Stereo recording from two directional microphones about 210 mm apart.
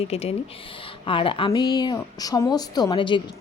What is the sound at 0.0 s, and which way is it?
Speech, 30° left (ahead or behind).